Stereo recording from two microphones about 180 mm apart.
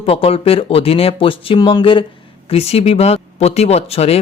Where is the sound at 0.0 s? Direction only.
30° left (ahead or behind).